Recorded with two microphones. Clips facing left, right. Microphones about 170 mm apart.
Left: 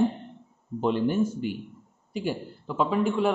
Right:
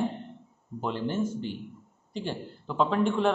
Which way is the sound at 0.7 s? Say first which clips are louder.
Left 6 dB; 20° left (ahead or behind).